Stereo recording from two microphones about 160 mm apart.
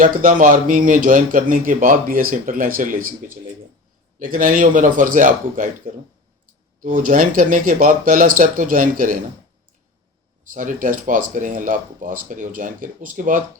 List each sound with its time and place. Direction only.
0.0 s speech: 60° right (ahead or behind)
10.5 s speech: 55° right (ahead or behind)